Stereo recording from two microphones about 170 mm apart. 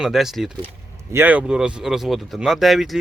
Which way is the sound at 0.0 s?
Centre (ahead or behind).